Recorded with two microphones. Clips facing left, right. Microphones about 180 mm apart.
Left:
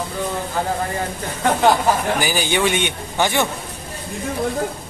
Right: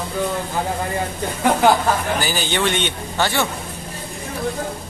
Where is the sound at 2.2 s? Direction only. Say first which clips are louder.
Left 2 dB; 10° left (ahead or behind).